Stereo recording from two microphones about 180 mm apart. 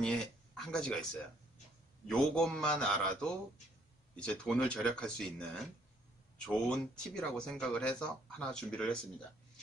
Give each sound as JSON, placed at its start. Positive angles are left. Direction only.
{"t": 0.0, "sound": "speech", "side_deg": 5}
{"t": 2.0, "sound": "speech", "side_deg": 5}